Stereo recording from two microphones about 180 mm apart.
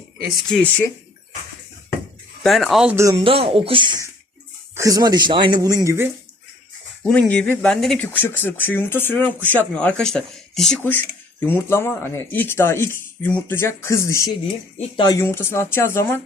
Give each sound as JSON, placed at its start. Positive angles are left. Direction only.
{"t": 0.3, "sound": "speech", "side_deg": 5}
{"t": 2.4, "sound": "speech", "side_deg": 0}
{"t": 2.9, "sound": "speech", "side_deg": -15}
{"t": 3.2, "sound": "speech", "side_deg": -30}
{"t": 7.0, "sound": "speech", "side_deg": 5}
{"t": 14.8, "sound": "speech", "side_deg": 25}
{"t": 15.2, "sound": "speech", "side_deg": 15}